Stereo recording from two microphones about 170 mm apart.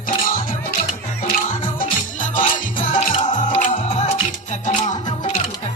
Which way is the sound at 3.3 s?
45° left (ahead or behind).